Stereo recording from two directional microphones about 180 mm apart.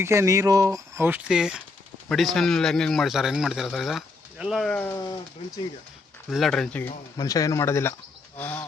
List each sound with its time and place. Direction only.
0.0 s a man's voice: 15° right (ahead or behind); by 4.9 s 10° left (ahead or behind)
6.3 s a man's voice: centre (ahead or behind)
7.2 s speech: 20° left (ahead or behind)